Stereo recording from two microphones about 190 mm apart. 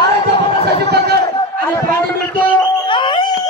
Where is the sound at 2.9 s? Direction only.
25° left (ahead or behind).